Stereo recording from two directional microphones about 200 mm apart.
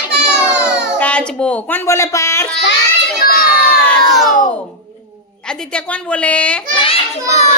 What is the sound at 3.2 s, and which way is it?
Crowd, 45° left (ahead or behind).